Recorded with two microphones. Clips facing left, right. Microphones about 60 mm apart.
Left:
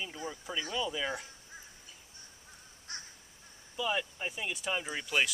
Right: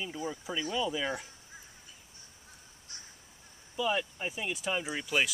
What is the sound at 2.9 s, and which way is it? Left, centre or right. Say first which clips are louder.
Crow: left 7 dB; left.